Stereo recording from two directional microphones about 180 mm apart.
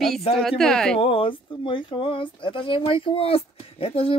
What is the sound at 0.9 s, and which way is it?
Speech, 30° left (ahead or behind).